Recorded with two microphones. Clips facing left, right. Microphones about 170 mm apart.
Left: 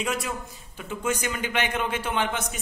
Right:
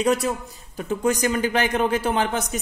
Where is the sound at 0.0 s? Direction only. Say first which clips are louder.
Right 8 dB; 35° right (ahead or behind).